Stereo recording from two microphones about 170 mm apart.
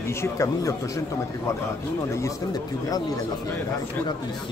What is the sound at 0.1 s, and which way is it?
Speech, 15° left (ahead or behind).